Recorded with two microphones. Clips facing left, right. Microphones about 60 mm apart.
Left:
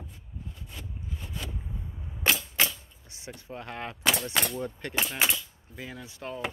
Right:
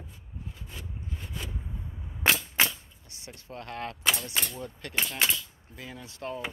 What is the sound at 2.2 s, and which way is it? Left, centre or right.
Cap gun, right.